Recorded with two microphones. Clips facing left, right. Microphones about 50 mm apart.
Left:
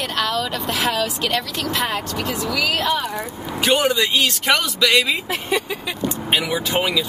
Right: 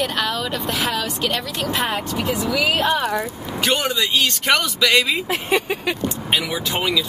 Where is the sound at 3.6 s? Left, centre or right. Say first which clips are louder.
Left 3 dB; centre.